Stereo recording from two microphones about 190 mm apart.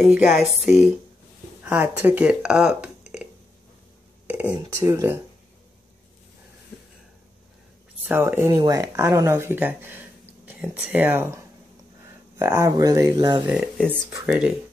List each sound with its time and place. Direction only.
0.1 s speech: 5° right (ahead or behind)
1.6 s speech: 10° right (ahead or behind)
4.3 s speech: 10° right (ahead or behind)
8.1 s speech: 10° right (ahead or behind)
13.5 s speech: 5° right (ahead or behind)